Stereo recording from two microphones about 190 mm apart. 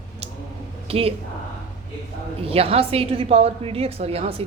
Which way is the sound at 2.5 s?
30° right (ahead or behind).